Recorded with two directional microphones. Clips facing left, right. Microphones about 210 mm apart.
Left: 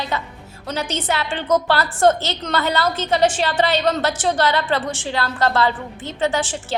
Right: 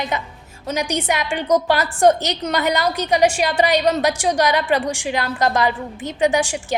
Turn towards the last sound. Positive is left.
turn(degrees=-15)  # may be behind; listen again after turning